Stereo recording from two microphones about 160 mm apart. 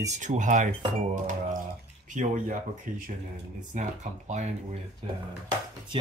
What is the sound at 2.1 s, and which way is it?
Speech, 50° right (ahead or behind).